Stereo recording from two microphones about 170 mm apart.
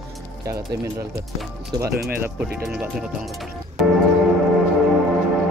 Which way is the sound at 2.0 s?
10° right (ahead or behind).